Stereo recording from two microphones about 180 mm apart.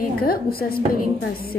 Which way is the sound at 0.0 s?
55° left (ahead or behind).